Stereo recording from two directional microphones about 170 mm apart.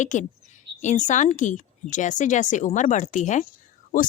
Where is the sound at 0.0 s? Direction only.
45° left (ahead or behind).